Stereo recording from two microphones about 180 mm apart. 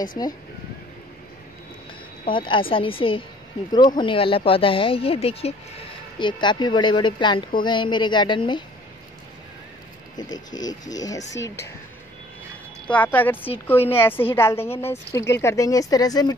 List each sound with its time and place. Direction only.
0.2 s speech: 20° left (ahead or behind)
2.3 s speech: 30° left (ahead or behind)
10.1 s a woman's voice: 20° left (ahead or behind)
12.8 s a woman's voice: 10° left (ahead or behind)